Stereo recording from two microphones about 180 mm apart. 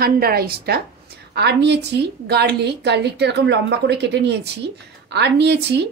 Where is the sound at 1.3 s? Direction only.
70° right (ahead or behind).